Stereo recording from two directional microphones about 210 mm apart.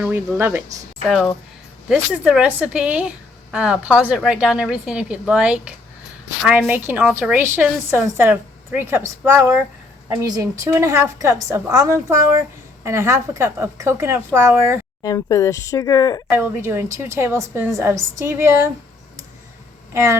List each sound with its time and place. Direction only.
0.0 s a woman's voice: 10° right (ahead or behind)
15.0 s speech: 15° left (ahead or behind)
16.3 s a woman's voice: 10° right (ahead or behind)
19.9 s speech: 10° right (ahead or behind)